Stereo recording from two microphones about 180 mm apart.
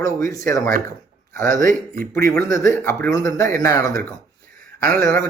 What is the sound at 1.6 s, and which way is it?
Speech, 55° right (ahead or behind).